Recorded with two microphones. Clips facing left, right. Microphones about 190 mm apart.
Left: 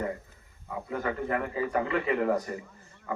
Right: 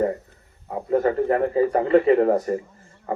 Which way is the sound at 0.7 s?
45° right (ahead or behind).